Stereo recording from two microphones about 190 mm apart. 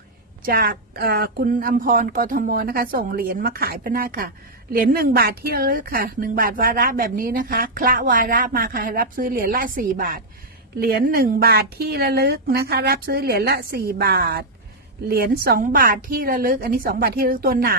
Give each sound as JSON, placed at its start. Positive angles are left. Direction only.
{"t": 0.4, "sound": "a woman's voice", "side_deg": -50}